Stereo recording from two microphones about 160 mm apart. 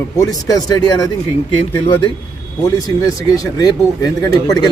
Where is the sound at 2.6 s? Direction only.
25° left (ahead or behind).